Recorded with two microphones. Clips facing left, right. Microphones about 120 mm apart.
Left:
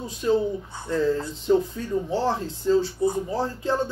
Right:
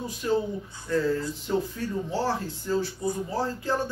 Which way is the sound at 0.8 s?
25° left (ahead or behind).